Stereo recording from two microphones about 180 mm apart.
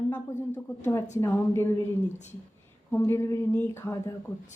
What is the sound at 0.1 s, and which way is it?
A woman's voice, 10° left (ahead or behind).